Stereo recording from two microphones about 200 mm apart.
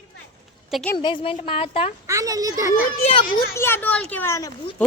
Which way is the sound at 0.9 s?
25° left (ahead or behind).